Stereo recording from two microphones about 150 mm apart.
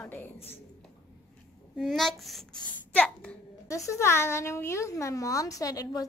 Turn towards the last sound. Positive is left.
turn(degrees=25)  # may be behind; listen again after turning